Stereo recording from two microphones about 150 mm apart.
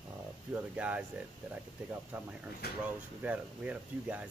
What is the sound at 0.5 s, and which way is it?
Speech, 10° right (ahead or behind).